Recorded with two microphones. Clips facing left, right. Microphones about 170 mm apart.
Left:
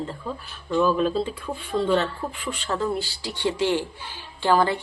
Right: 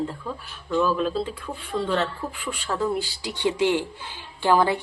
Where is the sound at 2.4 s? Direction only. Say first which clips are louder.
Even; 5° right (ahead or behind).